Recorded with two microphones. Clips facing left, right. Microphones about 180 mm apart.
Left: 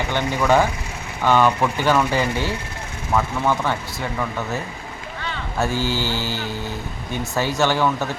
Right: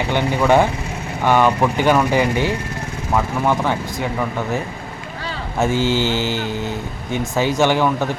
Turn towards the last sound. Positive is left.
turn(degrees=-15)  # may be behind; listen again after turning